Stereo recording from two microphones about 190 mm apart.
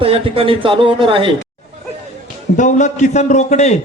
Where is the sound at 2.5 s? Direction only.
40° left (ahead or behind).